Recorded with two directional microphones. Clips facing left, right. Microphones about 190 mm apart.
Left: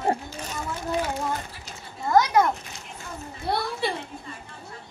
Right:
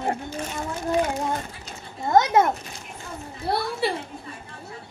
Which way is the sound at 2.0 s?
25° right (ahead or behind).